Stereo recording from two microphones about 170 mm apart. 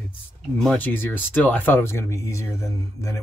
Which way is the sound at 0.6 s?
5° left (ahead or behind).